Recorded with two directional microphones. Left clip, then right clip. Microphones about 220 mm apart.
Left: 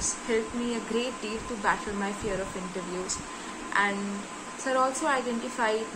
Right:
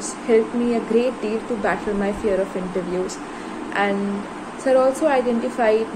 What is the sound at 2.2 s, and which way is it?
Speech, 10° left (ahead or behind).